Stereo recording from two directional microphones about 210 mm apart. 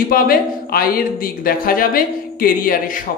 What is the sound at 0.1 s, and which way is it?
Speech, 45° left (ahead or behind).